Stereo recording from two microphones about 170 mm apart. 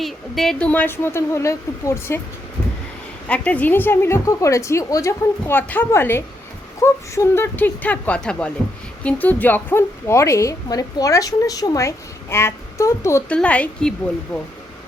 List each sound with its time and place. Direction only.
0.0 s a woman's voice: centre (ahead or behind)
3.2 s a woman's voice: 10° left (ahead or behind)